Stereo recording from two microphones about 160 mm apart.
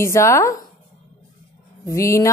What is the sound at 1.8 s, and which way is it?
Mantra, 20° left (ahead or behind).